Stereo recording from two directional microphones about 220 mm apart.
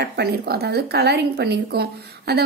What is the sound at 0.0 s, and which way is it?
A woman's voice, 50° right (ahead or behind).